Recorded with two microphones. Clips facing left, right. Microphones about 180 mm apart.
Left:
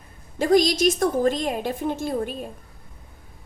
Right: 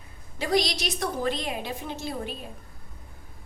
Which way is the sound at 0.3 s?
45° left (ahead or behind).